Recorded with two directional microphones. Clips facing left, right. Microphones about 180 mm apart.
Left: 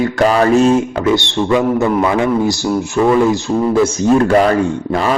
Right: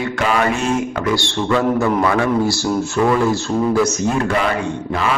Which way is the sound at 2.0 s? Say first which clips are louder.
Left 2 dB; 20° left (ahead or behind).